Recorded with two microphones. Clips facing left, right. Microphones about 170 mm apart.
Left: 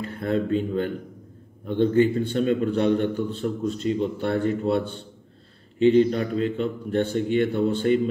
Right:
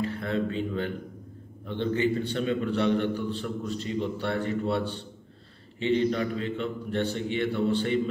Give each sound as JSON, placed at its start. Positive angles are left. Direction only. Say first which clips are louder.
{"t": 0.0, "sound": "a man's voice", "louder": "left 3 dB", "side_deg": 45}